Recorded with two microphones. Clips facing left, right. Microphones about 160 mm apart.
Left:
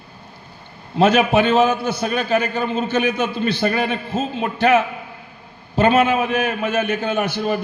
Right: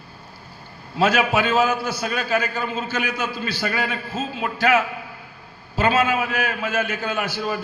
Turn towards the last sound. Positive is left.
turn(degrees=25)  # may be behind; listen again after turning